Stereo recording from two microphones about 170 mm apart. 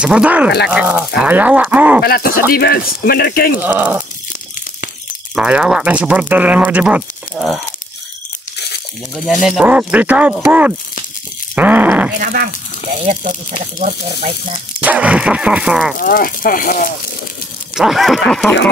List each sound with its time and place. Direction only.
0.0 s speech: 5° right (ahead or behind)
2.0 s speech: 60° left (ahead or behind)
3.6 s speech: 10° right (ahead or behind)
5.3 s speech: 5° right (ahead or behind)
7.3 s a sound: centre (ahead or behind)
8.5 s crunch: 75° left (ahead or behind)
9.1 s speech: centre (ahead or behind)
11.5 s groan: 10° right (ahead or behind)
12.2 s speech: 60° right (ahead or behind)
14.8 s speech: 10° right (ahead or behind)
16.0 s speech: 55° left (ahead or behind)
17.7 s a sound: centre (ahead or behind)